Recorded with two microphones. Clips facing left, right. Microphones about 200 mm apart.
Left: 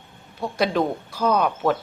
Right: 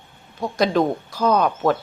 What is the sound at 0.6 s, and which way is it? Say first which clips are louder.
A woman's voice: right 3 dB; 10° left (ahead or behind).